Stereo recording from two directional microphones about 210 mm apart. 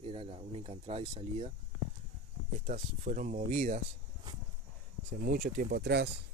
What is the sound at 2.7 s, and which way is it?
Speech, 35° right (ahead or behind).